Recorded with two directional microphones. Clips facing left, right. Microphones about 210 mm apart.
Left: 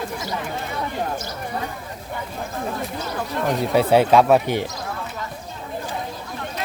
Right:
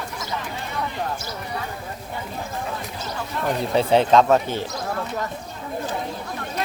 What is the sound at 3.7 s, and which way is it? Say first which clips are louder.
Speech: left 1 dB; 5° left (ahead or behind).